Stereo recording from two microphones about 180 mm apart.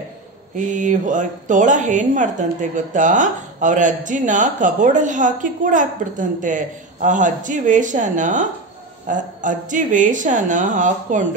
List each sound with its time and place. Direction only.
0.6 s a woman's voice: 45° right (ahead or behind)